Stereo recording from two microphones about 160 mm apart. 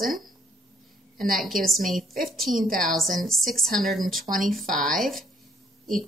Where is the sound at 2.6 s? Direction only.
60° right (ahead or behind).